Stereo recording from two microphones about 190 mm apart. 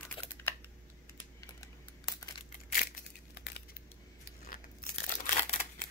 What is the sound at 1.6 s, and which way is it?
Crumpling, 15° left (ahead or behind).